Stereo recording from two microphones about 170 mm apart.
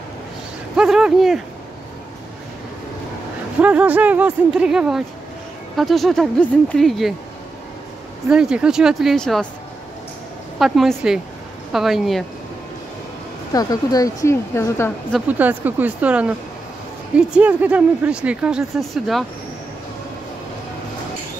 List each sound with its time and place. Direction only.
0.7 s speech: 5° right (ahead or behind)
3.6 s speech: 10° right (ahead or behind)
8.3 s speech: 5° right (ahead or behind)
10.6 s speech: centre (ahead or behind)
13.5 s speech: 20° left (ahead or behind)
15.1 s speech: 10° right (ahead or behind)